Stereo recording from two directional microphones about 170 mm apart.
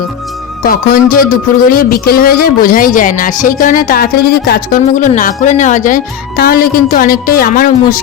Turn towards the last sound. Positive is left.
turn(degrees=55)  # may be behind; listen again after turning